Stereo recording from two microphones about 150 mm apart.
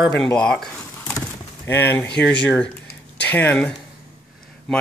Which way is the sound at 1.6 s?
15° left (ahead or behind).